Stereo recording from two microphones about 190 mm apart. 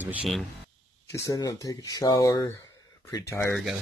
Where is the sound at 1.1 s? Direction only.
15° left (ahead or behind).